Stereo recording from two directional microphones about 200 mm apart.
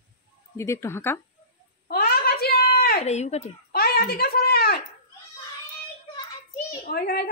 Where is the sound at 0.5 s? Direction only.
15° left (ahead or behind).